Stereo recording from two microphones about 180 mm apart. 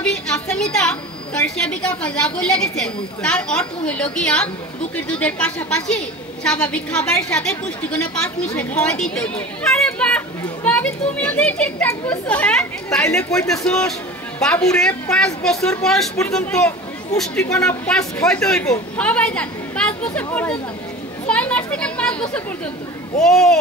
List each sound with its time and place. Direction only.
0.0 s a woman's voice: 5° left (ahead or behind)